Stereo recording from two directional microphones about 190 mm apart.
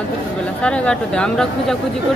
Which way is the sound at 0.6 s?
5° left (ahead or behind).